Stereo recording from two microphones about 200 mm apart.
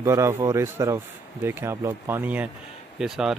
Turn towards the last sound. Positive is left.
turn(degrees=0)  # may be behind; listen again after turning